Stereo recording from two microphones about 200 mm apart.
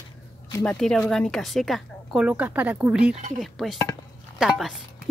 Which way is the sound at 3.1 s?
40° right (ahead or behind).